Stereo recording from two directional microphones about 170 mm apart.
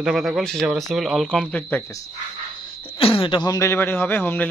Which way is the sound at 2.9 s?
30° left (ahead or behind).